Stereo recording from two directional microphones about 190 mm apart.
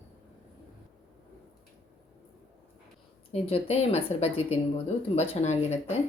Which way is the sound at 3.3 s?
30° left (ahead or behind).